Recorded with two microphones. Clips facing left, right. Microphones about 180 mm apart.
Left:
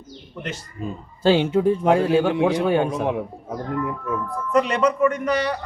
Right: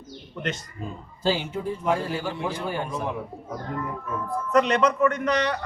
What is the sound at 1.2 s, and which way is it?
A man's voice, 75° left (ahead or behind).